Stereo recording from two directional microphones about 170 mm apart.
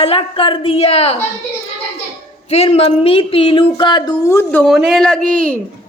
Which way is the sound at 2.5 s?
35° left (ahead or behind).